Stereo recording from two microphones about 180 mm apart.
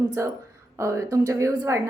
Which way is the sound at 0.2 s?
15° right (ahead or behind).